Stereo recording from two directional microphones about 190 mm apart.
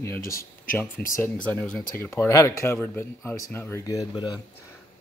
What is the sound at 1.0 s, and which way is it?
Speech, 55° left (ahead or behind).